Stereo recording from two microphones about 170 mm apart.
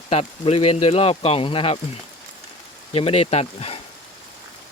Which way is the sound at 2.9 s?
35° left (ahead or behind).